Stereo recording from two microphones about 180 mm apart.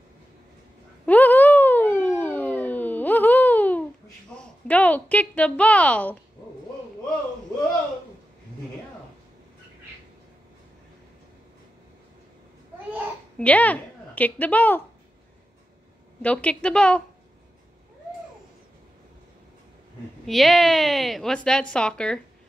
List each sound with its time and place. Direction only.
1.0 s a sound: 10° left (ahead or behind)
4.4 s a woman's voice: 5° left (ahead or behind)
13.4 s a woman's voice: 10° left (ahead or behind)
16.2 s a woman's voice: 5° left (ahead or behind)
20.2 s a woman's voice: centre (ahead or behind)